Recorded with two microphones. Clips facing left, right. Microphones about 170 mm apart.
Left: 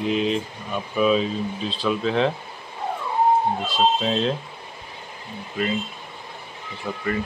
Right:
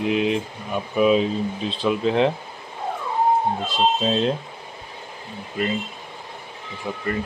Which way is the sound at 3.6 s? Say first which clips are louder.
Even; 15° right (ahead or behind).